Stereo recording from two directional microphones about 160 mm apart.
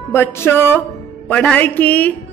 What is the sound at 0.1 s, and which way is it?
A man's voice, 15° left (ahead or behind).